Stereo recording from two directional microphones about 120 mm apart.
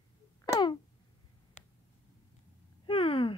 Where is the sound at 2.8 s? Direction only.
50° left (ahead or behind).